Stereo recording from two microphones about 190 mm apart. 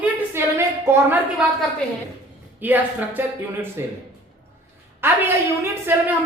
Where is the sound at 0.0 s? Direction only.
15° right (ahead or behind).